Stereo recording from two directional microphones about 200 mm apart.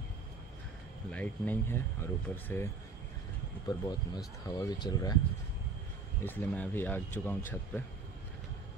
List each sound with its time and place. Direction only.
1.1 s speech: 10° left (ahead or behind)
6.2 s speech: 10° left (ahead or behind)